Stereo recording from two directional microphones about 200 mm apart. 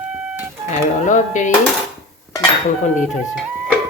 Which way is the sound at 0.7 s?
40° left (ahead or behind).